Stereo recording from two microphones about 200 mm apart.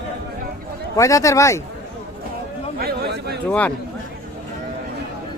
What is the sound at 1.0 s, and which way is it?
Speech, 15° left (ahead or behind).